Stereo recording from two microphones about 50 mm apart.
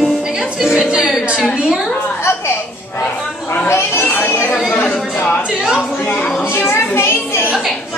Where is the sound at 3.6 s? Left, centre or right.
Left.